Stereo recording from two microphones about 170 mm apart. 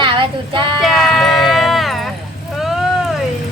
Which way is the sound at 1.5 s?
Centre (ahead or behind).